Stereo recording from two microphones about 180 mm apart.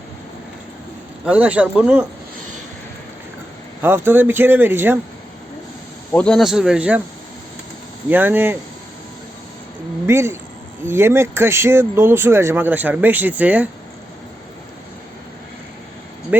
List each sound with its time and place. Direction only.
1.2 s speech: 5° right (ahead or behind)
3.8 s speech: 15° right (ahead or behind)
6.1 s speech: 5° left (ahead or behind)
8.1 s speech: 10° right (ahead or behind)
10.1 s speech: 15° right (ahead or behind)
16.3 s speech: 10° right (ahead or behind)